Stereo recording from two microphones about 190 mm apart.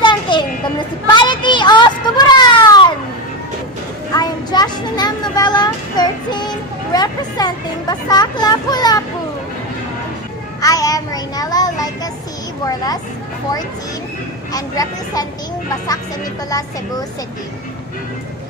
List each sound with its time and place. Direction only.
0.0 s a sound: 25° left (ahead or behind)
4.1 s a sound: 20° left (ahead or behind)
10.6 s child singing: 20° left (ahead or behind)
12.6 s speech: 20° left (ahead or behind)
14.5 s speech: 20° left (ahead or behind)
16.4 s speech: 20° left (ahead or behind)